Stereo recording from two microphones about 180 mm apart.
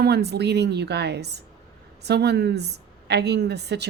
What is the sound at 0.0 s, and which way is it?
A woman's voice, 65° right (ahead or behind).